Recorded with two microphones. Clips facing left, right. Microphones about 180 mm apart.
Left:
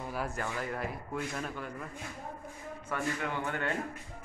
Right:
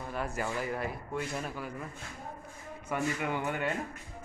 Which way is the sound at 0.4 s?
5° right (ahead or behind).